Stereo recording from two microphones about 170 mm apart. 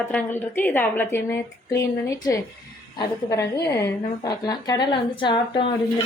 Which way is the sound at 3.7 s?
15° left (ahead or behind).